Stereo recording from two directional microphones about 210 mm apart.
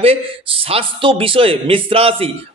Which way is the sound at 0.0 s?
25° right (ahead or behind).